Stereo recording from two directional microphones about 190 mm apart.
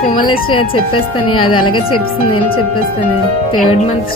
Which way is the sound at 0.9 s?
25° left (ahead or behind).